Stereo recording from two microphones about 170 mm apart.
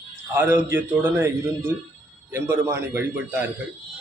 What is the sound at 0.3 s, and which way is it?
Speech, 15° right (ahead or behind).